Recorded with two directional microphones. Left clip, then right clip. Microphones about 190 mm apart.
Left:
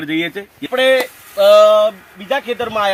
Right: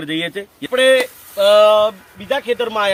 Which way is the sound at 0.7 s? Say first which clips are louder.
Right 1 dB; 30° right (ahead or behind).